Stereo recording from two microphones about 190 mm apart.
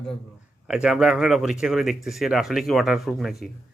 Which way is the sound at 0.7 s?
5° right (ahead or behind).